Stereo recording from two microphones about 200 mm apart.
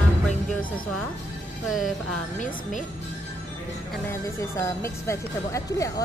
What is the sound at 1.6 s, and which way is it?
Speech, centre (ahead or behind).